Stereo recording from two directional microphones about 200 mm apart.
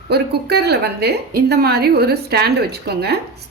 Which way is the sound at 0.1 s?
55° right (ahead or behind).